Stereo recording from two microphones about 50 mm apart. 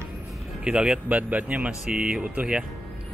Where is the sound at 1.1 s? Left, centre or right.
Right.